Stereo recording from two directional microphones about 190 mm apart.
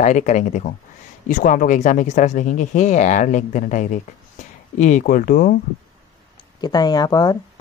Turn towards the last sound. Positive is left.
turn(degrees=20)  # may be behind; listen again after turning